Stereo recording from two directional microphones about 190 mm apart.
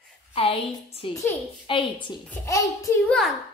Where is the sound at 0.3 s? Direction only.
30° left (ahead or behind).